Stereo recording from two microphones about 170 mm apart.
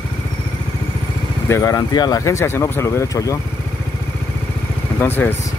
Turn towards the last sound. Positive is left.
turn(degrees=10)  # may be behind; listen again after turning